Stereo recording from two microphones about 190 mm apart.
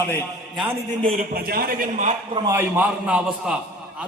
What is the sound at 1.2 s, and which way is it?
Speech, 50° right (ahead or behind).